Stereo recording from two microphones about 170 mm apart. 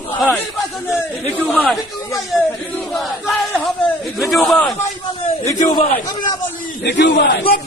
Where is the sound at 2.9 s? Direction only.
Centre (ahead or behind).